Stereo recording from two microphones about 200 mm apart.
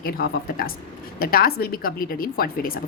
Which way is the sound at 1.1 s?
45° left (ahead or behind).